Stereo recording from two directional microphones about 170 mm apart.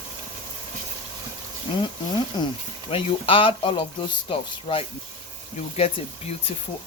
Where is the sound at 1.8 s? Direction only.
25° left (ahead or behind).